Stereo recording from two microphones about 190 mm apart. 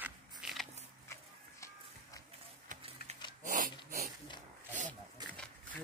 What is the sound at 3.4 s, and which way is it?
Snort, 45° right (ahead or behind).